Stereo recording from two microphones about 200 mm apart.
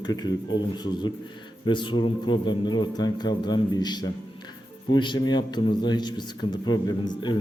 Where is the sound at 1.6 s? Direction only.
25° left (ahead or behind).